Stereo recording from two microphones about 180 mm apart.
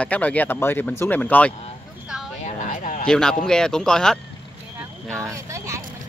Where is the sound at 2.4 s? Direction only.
45° left (ahead or behind).